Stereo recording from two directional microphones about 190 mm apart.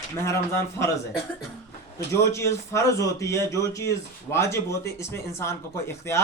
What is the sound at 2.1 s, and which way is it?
Speech, 15° left (ahead or behind).